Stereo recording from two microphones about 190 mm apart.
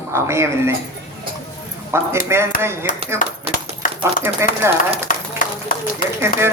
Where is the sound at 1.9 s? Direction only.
15° right (ahead or behind).